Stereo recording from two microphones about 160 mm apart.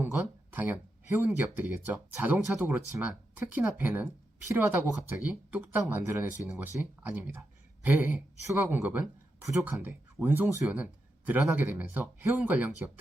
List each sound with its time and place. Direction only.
0.0 s speech: 10° right (ahead or behind)